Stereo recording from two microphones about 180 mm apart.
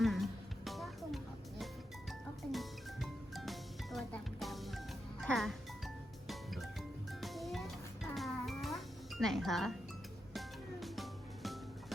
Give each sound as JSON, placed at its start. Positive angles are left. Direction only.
{"t": 0.0, "sound": "music", "side_deg": 0}